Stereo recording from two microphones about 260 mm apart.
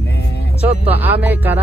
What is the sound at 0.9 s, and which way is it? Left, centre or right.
Music, centre.